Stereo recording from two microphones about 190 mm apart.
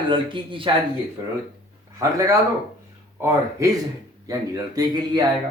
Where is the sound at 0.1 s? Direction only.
25° right (ahead or behind).